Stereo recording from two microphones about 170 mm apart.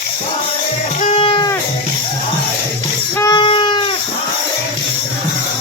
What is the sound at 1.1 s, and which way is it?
Music, 30° left (ahead or behind).